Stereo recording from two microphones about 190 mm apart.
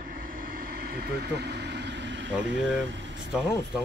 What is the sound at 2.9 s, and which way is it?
Vehicle, 70° right (ahead or behind).